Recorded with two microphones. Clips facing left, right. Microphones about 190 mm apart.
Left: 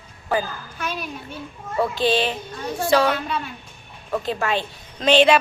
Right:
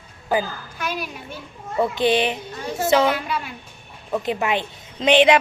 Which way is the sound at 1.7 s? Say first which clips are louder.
Right 1 dB; 20° right (ahead or behind).